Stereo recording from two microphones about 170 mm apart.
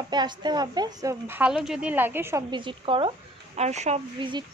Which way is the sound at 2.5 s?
30° right (ahead or behind).